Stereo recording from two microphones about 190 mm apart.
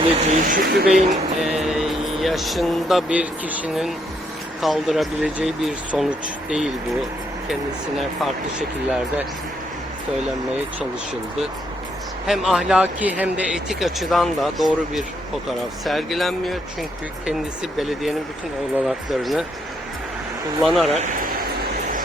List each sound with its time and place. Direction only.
0.3 s speech: 45° right (ahead or behind)
0.9 s speech: centre (ahead or behind)
7.9 s speech: centre (ahead or behind)
12.2 s speech: centre (ahead or behind)
20.6 s speech: centre (ahead or behind)